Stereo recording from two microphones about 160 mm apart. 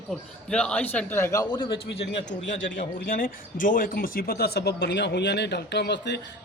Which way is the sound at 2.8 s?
60° left (ahead or behind).